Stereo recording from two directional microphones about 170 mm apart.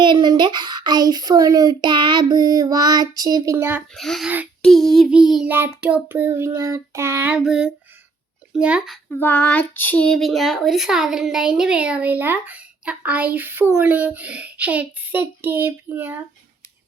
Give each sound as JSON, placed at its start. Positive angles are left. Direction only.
{"t": 0.0, "sound": "speech", "side_deg": -25}
{"t": 3.9, "sound": "speech", "side_deg": 0}
{"t": 9.0, "sound": "speech", "side_deg": 10}